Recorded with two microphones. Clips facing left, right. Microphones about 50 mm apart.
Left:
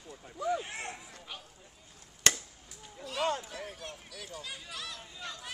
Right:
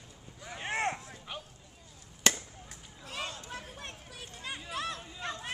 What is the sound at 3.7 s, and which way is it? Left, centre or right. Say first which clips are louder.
Speech: left 1 dB; right.